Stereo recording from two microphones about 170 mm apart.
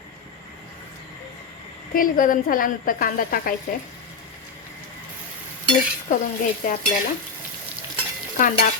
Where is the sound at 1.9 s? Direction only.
55° left (ahead or behind).